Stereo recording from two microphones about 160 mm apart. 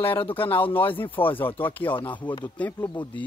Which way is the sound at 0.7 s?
10° left (ahead or behind).